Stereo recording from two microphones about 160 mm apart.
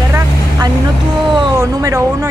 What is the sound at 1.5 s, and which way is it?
Speech, 20° right (ahead or behind).